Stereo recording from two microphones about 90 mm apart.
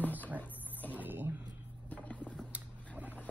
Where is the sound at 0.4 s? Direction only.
20° left (ahead or behind).